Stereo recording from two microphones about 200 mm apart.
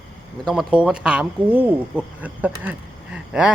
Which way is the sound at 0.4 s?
5° right (ahead or behind).